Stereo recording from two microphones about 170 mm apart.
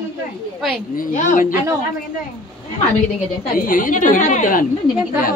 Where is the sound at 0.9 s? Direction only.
50° left (ahead or behind).